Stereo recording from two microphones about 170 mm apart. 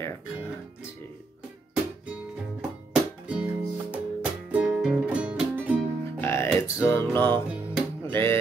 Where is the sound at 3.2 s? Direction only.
10° right (ahead or behind).